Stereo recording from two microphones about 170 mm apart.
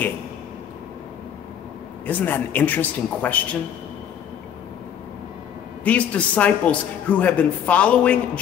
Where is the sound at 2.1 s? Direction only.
10° left (ahead or behind).